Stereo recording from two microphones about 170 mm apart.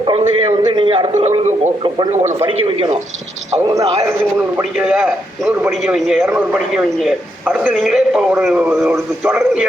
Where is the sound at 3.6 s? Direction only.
20° right (ahead or behind).